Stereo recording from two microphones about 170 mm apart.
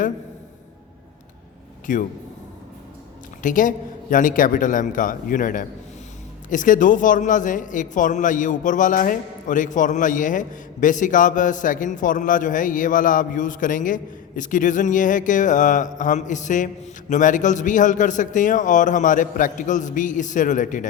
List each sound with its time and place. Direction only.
1.9 s a man's voice: 50° left (ahead or behind)
3.4 s a man's voice: 50° left (ahead or behind)